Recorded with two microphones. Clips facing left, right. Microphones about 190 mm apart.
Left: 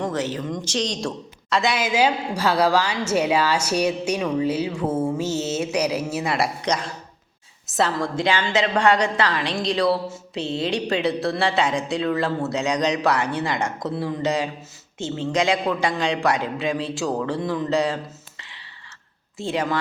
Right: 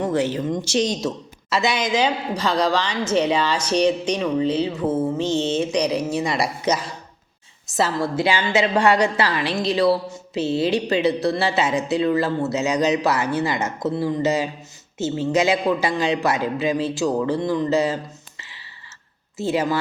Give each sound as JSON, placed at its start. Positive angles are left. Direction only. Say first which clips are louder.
{"t": 0.0, "sound": "speech", "louder": "right 4 dB", "side_deg": -10}
{"t": 0.3, "sound": "speech", "louder": "right 4 dB", "side_deg": -25}
{"t": 0.6, "sound": "a man's voice", "louder": "right 4 dB", "side_deg": -10}